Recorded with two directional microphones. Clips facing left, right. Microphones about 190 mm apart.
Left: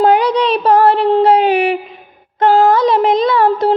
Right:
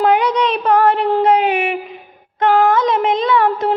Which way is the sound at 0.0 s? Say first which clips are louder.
Left 3 dB; 35° left (ahead or behind).